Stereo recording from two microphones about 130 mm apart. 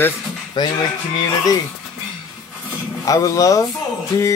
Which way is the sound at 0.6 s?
35° left (ahead or behind).